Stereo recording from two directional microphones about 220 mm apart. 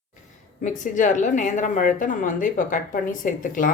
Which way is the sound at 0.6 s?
35° left (ahead or behind).